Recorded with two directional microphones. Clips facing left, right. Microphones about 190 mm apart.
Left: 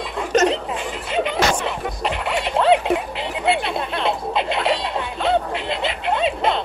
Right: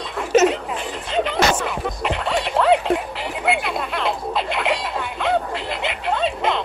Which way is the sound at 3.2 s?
25° left (ahead or behind).